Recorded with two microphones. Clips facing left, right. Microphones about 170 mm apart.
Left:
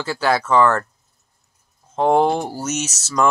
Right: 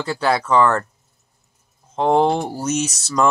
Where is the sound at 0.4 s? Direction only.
5° left (ahead or behind).